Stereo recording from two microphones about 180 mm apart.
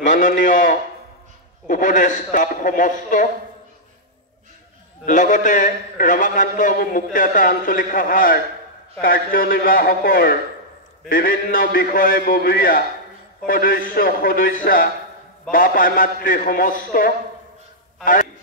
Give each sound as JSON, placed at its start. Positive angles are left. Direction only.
{"t": 0.1, "sound": "a man's voice", "side_deg": 45}
{"t": 5.0, "sound": "a man's voice", "side_deg": 45}